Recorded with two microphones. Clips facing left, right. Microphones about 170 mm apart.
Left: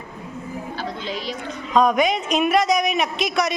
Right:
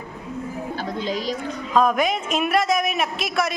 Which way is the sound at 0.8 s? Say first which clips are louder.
Right 4 dB; 45° right (ahead or behind).